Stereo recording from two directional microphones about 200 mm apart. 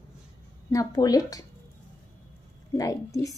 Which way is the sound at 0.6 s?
15° left (ahead or behind).